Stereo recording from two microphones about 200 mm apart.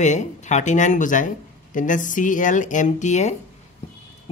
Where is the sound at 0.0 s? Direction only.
35° left (ahead or behind).